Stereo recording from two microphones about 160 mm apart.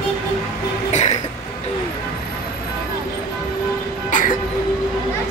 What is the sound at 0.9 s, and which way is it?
Cough, 45° left (ahead or behind).